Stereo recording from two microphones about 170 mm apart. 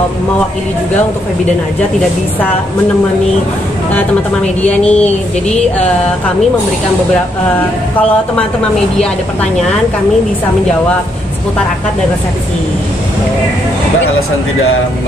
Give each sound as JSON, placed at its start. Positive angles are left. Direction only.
{"t": 3.9, "sound": "speech", "side_deg": 10}